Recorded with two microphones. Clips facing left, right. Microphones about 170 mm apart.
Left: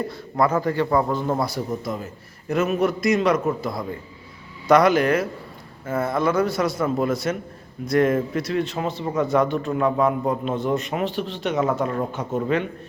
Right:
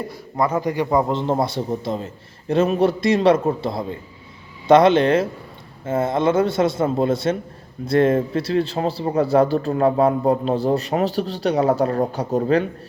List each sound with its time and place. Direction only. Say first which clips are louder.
0.1 s a man's voice: right 1 dB; 15° right (ahead or behind); by 12.6 s 35° right (ahead or behind)